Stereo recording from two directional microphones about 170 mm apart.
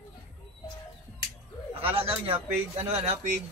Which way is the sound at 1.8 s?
35° right (ahead or behind).